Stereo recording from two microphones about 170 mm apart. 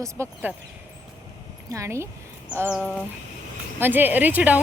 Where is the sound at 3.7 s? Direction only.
10° right (ahead or behind).